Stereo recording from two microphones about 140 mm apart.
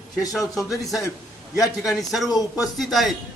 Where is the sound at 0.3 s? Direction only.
Centre (ahead or behind).